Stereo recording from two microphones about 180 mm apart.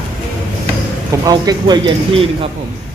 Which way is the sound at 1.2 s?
25° right (ahead or behind).